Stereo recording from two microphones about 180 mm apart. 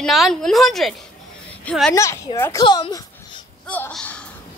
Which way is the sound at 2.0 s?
15° left (ahead or behind).